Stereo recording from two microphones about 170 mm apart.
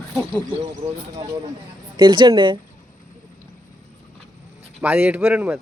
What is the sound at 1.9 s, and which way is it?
Speech, 25° right (ahead or behind).